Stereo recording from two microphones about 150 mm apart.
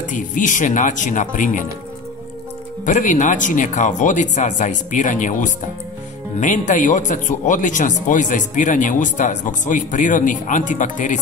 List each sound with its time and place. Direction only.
0.0 s speech: 55° left (ahead or behind)
2.8 s speech: 60° left (ahead or behind)